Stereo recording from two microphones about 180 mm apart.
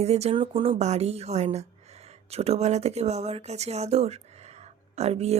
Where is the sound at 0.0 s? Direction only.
35° right (ahead or behind).